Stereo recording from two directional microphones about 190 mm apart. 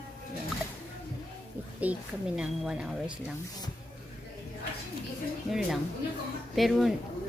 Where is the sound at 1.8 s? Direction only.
5° right (ahead or behind).